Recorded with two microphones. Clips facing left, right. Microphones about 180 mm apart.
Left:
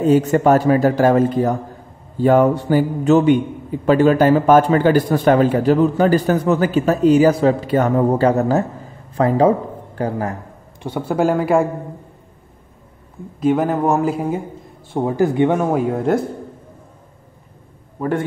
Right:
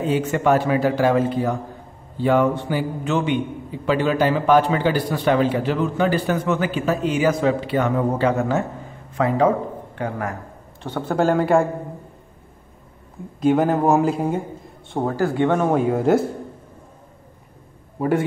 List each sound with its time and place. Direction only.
0.0 s a man's voice: 40° left (ahead or behind)
10.8 s speech: 10° left (ahead or behind)
13.4 s speech: centre (ahead or behind)
15.0 s speech: 20° left (ahead or behind); by 16.3 s centre (ahead or behind)
17.9 s a man's voice: 10° right (ahead or behind)